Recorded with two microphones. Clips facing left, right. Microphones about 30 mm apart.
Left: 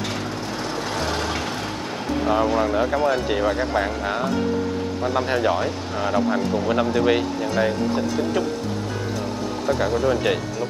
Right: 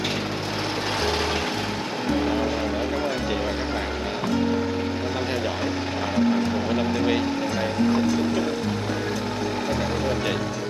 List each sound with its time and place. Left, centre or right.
0.9 s vehicle: centre
2.2 s speech: centre
5.1 s speech: centre
9.8 s speech: centre